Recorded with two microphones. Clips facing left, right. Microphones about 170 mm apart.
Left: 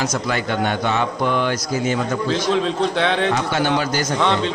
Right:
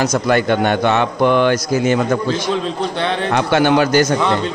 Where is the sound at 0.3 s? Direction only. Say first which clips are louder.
Right 8 dB; 65° right (ahead or behind).